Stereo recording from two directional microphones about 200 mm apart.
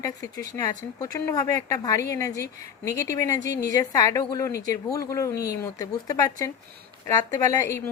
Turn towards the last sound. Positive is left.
turn(degrees=15)  # may be behind; listen again after turning